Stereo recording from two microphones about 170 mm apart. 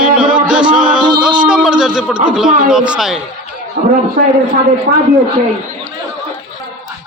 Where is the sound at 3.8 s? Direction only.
55° right (ahead or behind).